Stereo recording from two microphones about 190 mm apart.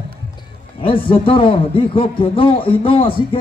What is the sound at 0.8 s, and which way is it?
A man's voice, 30° left (ahead or behind).